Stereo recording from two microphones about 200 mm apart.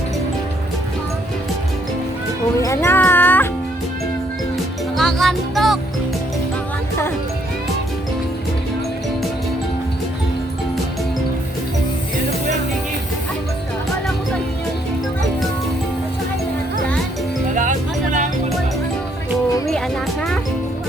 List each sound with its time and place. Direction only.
2.6 s music: 15° left (ahead or behind)
4.9 s music: centre (ahead or behind)
17.5 s music: 40° right (ahead or behind)